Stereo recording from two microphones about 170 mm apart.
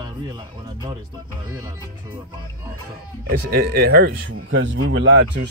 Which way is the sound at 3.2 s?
70° right (ahead or behind).